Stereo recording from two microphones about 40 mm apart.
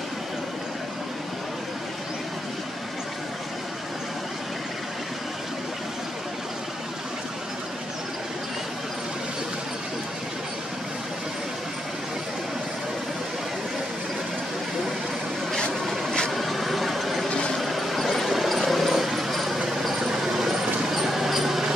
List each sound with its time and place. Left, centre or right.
16.3 s vehicle: centre
17.3 s a sound: left
17.6 s vehicle: centre